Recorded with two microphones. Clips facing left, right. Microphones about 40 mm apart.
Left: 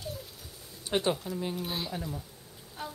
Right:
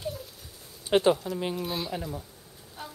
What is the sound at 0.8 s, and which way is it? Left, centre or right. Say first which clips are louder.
Speech: right 7 dB; right.